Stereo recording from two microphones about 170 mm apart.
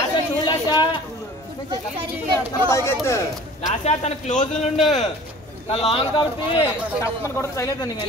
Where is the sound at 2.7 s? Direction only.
15° left (ahead or behind).